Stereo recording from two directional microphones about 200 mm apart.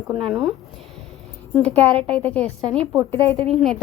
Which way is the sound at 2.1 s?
5° left (ahead or behind).